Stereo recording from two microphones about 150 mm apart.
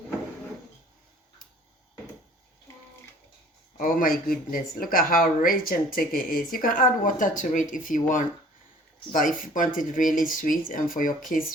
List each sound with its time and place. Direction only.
3.8 s speech: 70° left (ahead or behind)